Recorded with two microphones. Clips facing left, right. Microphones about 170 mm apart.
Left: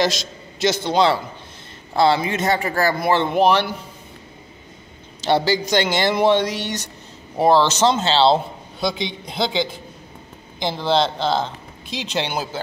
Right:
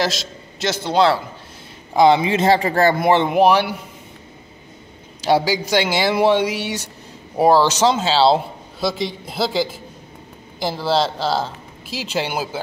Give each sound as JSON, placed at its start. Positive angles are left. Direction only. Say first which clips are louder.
{"t": 0.0, "sound": "a man's voice", "louder": "left 1 dB", "side_deg": 0}
{"t": 2.0, "sound": "a man's voice", "louder": "right 4 dB", "side_deg": -15}
{"t": 2.2, "sound": "speech", "louder": "right 5 dB", "side_deg": -30}
{"t": 3.3, "sound": "a man's voice", "louder": "right 2 dB", "side_deg": -10}
{"t": 5.2, "sound": "a man's voice", "louder": "right 1 dB", "side_deg": -10}